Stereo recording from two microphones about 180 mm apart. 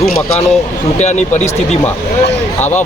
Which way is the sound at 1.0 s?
40° left (ahead or behind).